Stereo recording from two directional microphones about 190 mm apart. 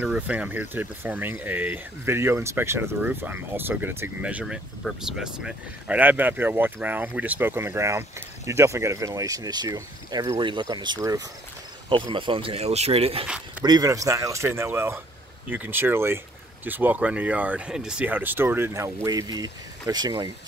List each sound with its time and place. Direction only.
0.0 s speech: 5° right (ahead or behind); by 13.2 s 30° right (ahead or behind)
13.7 s speech: 20° right (ahead or behind)